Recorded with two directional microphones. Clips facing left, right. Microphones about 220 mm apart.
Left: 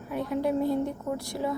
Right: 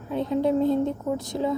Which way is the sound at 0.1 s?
25° right (ahead or behind).